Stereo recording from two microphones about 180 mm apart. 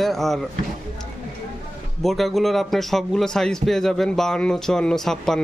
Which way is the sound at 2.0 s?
Centre (ahead or behind).